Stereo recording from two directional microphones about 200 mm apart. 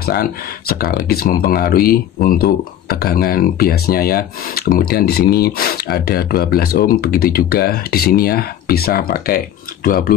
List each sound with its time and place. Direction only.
0.0 s speech: 50° left (ahead or behind)